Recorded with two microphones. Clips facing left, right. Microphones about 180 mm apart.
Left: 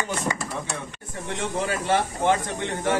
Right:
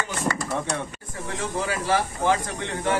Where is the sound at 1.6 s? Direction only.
25° left (ahead or behind).